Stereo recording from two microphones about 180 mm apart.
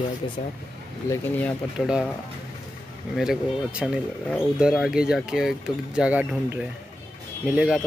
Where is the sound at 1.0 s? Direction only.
15° left (ahead or behind).